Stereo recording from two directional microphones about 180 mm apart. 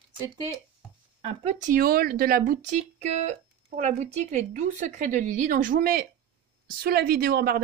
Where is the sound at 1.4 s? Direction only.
35° right (ahead or behind).